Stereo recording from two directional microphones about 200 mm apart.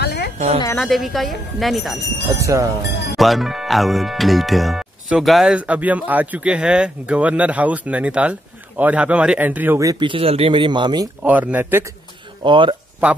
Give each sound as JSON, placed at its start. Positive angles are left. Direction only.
{"t": 0.0, "sound": "a sound", "side_deg": 55}
{"t": 0.7, "sound": "speech", "side_deg": 0}
{"t": 2.2, "sound": "speech", "side_deg": -15}
{"t": 3.2, "sound": "speech", "side_deg": 0}
{"t": 11.2, "sound": "speech", "side_deg": -10}
{"t": 12.4, "sound": "speech", "side_deg": -25}